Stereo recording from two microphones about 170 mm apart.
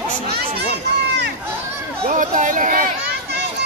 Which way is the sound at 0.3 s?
70° right (ahead or behind).